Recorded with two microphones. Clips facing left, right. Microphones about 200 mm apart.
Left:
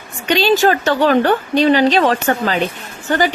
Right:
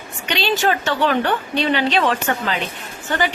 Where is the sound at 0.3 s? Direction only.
40° left (ahead or behind).